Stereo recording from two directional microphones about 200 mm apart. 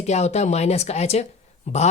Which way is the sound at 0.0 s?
35° left (ahead or behind).